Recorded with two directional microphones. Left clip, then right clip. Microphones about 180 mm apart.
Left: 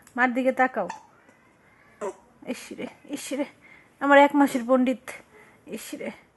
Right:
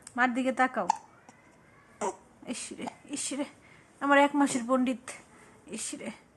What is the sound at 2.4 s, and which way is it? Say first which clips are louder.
A woman's voice: left 5 dB; 40° left (ahead or behind).